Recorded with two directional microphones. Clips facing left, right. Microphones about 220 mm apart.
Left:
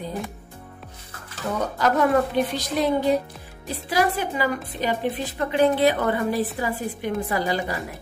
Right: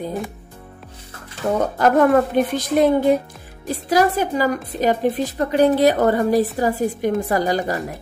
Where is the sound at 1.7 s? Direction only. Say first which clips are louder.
Right 5 dB; 50° right (ahead or behind).